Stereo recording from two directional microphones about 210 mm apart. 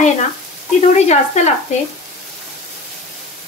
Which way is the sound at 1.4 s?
30° left (ahead or behind).